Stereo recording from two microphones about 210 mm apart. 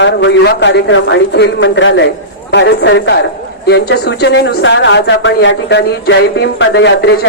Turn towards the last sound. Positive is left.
turn(degrees=55)  # may be behind; listen again after turning